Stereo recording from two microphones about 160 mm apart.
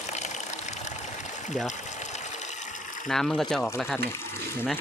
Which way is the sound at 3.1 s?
Centre (ahead or behind).